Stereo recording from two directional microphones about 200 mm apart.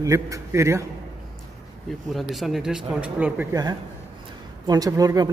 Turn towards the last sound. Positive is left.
turn(degrees=-20)  # may be behind; listen again after turning